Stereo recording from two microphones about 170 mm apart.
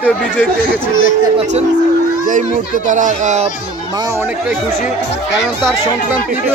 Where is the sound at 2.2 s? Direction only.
50° right (ahead or behind).